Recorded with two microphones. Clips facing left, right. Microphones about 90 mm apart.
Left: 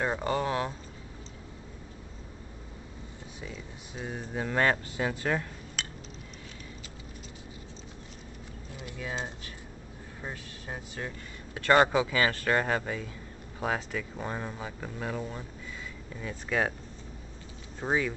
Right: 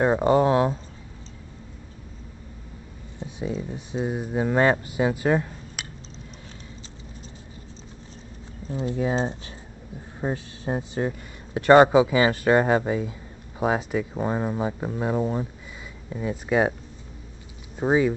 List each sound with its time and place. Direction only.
0.0 s speech: 25° right (ahead or behind)
3.2 s speech: 20° right (ahead or behind)
4.1 s speech: 15° right (ahead or behind)
8.6 s speech: 30° right (ahead or behind)
17.7 s speech: 20° right (ahead or behind)